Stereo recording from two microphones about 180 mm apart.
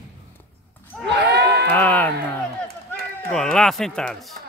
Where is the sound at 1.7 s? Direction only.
10° left (ahead or behind).